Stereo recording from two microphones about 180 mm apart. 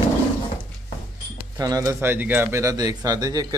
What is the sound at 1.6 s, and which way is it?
A man's voice, 20° right (ahead or behind).